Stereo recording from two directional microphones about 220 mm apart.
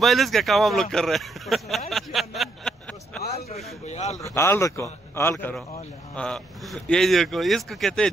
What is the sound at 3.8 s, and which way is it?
Speech, 30° left (ahead or behind).